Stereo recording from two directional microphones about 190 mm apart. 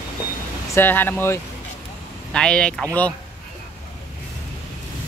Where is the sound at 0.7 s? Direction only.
10° left (ahead or behind).